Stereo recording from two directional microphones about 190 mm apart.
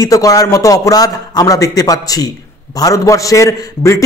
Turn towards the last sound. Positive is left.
turn(degrees=15)  # may be behind; listen again after turning